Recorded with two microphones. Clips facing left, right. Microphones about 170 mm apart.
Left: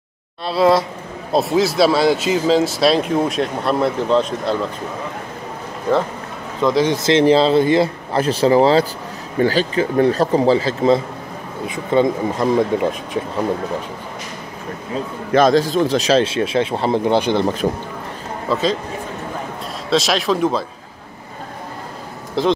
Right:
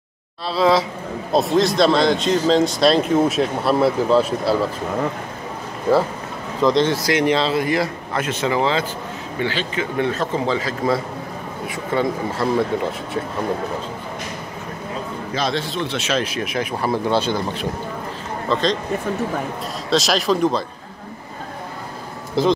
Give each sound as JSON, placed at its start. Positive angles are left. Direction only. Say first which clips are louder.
{"t": 0.5, "sound": "speech", "louder": "left 2 dB", "side_deg": 0}
{"t": 6.6, "sound": "speech", "louder": "even", "side_deg": 5}
{"t": 6.9, "sound": "speech", "louder": "left 5 dB", "side_deg": 25}
{"t": 15.3, "sound": "speech", "louder": "left 10 dB", "side_deg": 45}
{"t": 18.5, "sound": "speech", "louder": "left 1 dB", "side_deg": 5}
{"t": 19.9, "sound": "speech", "louder": "left 1 dB", "side_deg": 0}
{"t": 22.4, "sound": "speech", "louder": "even", "side_deg": 0}